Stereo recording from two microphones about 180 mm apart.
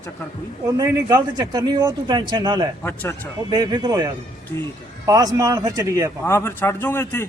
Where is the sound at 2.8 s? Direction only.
10° left (ahead or behind).